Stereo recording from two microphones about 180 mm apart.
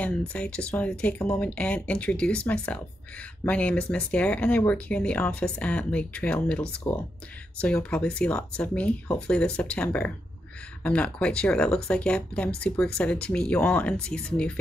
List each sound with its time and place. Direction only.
0.3 s speech: 5° left (ahead or behind)